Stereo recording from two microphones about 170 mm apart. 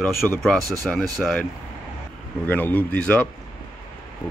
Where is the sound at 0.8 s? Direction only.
Centre (ahead or behind).